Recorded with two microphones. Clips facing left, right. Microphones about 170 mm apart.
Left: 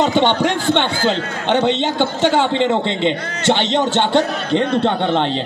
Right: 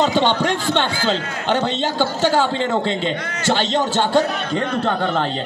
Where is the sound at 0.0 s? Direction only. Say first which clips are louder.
Left 2 dB; 20° left (ahead or behind).